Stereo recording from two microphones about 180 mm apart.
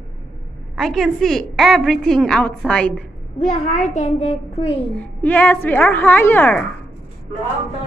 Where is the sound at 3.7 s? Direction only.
40° left (ahead or behind).